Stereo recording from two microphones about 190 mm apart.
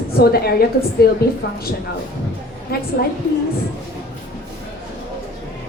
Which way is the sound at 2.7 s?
55° left (ahead or behind).